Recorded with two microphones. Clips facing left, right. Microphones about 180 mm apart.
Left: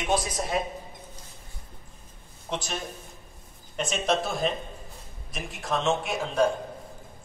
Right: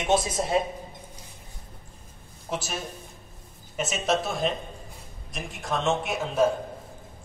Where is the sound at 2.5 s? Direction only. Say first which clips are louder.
Right 1 dB; 5° right (ahead or behind).